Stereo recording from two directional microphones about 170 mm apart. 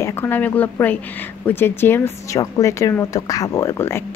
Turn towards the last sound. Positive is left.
turn(degrees=15)  # may be behind; listen again after turning